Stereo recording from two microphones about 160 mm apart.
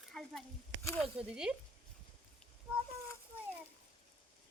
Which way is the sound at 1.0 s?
5° right (ahead or behind).